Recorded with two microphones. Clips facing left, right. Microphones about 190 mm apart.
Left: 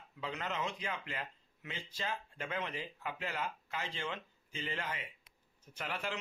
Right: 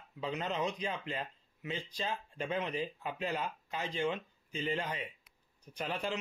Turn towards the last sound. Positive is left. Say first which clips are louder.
# right 4 dB
turn(degrees=-15)  # may be behind; listen again after turning